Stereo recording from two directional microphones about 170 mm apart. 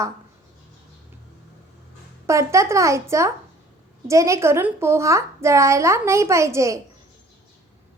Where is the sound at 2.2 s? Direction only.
15° right (ahead or behind).